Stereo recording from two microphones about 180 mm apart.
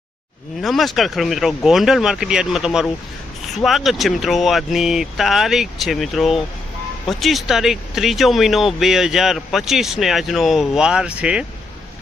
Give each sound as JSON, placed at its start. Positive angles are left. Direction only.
{"t": 0.6, "sound": "speech", "side_deg": 0}